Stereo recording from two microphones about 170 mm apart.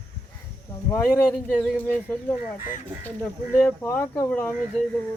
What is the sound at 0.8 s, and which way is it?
Speech, 15° left (ahead or behind).